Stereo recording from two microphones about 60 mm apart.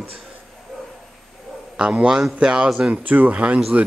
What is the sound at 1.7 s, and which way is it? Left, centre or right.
Speech, centre.